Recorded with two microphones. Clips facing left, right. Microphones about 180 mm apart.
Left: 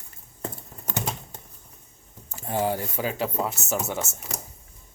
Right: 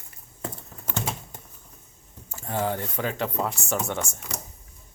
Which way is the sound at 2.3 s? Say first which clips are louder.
Left 2 dB; 15° left (ahead or behind).